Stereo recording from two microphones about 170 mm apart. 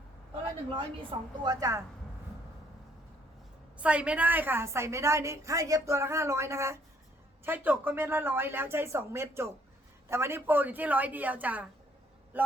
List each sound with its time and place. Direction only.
1.1 s a woman's voice: 30° right (ahead or behind)
1.5 s speech: 20° right (ahead or behind)
3.8 s a woman's voice: 5° right (ahead or behind)